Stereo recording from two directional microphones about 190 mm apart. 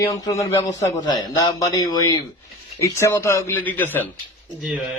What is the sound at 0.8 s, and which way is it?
A man's voice, 15° left (ahead or behind).